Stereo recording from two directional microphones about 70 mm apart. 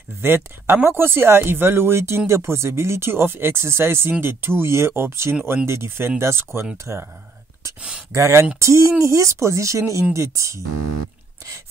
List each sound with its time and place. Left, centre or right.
0.2 s speech: right
8.1 s speech: right